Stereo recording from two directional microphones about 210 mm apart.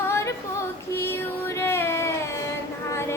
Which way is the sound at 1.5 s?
10° left (ahead or behind).